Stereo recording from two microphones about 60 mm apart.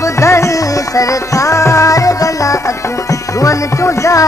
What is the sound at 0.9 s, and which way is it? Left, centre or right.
Music, left.